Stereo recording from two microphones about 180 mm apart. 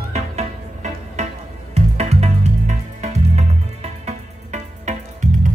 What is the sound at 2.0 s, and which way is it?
Music, 35° right (ahead or behind).